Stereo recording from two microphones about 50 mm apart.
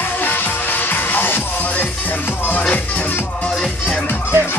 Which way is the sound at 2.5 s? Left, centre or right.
Left.